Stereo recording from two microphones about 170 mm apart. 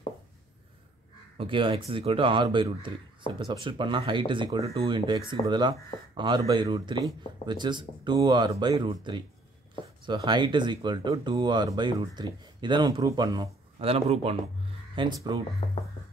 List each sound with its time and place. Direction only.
1.4 s speech: 30° right (ahead or behind)
15.6 s speech: 35° left (ahead or behind)